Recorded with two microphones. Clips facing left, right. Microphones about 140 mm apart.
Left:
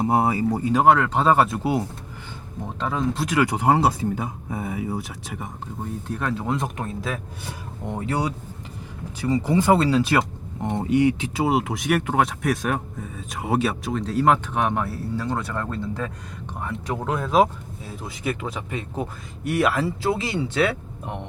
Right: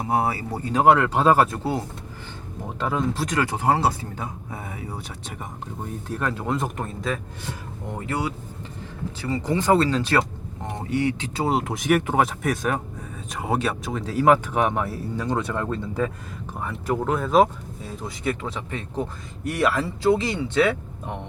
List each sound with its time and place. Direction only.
0.0 s speech: 20° left (ahead or behind)
0.7 s speech: centre (ahead or behind)
1.5 s speech: 15° left (ahead or behind)
2.7 s speech: 5° right (ahead or behind)
3.3 s speech: 15° left (ahead or behind)
7.9 s speech: 20° left (ahead or behind); by 15.3 s centre (ahead or behind)
16.6 s speech: 5° right (ahead or behind)